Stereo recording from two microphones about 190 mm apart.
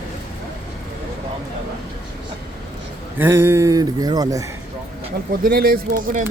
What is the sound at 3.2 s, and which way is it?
Speech, 10° right (ahead or behind).